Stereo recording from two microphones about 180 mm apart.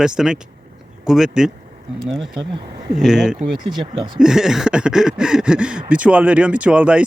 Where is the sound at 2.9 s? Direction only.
5° right (ahead or behind).